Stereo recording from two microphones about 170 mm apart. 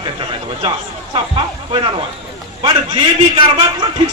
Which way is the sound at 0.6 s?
30° right (ahead or behind).